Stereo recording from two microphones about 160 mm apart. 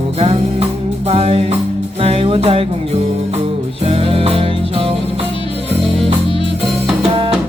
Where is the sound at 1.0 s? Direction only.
40° right (ahead or behind).